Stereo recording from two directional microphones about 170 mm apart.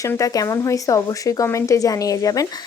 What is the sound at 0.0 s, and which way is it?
Speech, 20° left (ahead or behind).